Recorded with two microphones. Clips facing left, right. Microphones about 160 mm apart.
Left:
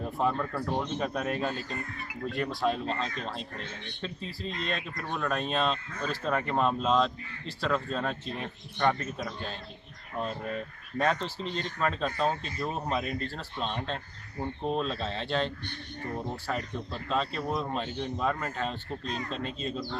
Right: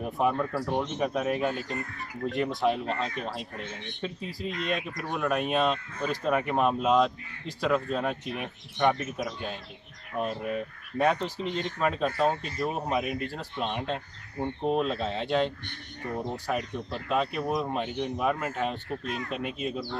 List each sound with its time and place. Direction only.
0.0 s speech: 15° right (ahead or behind)